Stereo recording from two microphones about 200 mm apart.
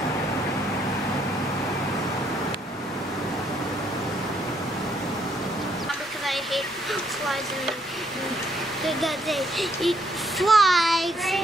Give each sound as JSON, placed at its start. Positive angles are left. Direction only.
{"t": 6.2, "sound": "speech", "side_deg": 0}
{"t": 8.8, "sound": "speech", "side_deg": 0}